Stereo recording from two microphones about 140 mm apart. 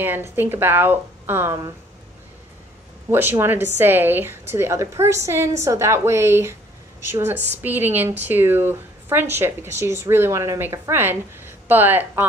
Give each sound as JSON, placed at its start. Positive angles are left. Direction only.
{"t": 0.0, "sound": "a woman's voice", "side_deg": -15}
{"t": 3.1, "sound": "a woman's voice", "side_deg": -15}